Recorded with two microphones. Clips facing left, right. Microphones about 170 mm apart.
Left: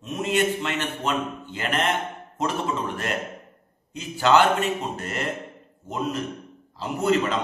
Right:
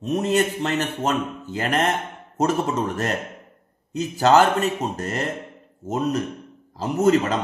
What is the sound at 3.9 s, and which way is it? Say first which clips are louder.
A man's voice: right 3 dB; 40° right (ahead or behind).